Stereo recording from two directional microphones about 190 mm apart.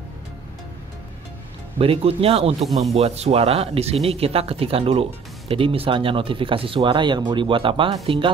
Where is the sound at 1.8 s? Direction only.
30° right (ahead or behind).